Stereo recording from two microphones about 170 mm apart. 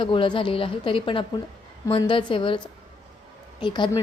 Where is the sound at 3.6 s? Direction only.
25° left (ahead or behind).